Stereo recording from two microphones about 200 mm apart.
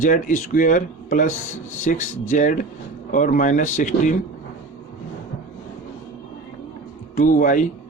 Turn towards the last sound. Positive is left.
turn(degrees=40)  # may be behind; listen again after turning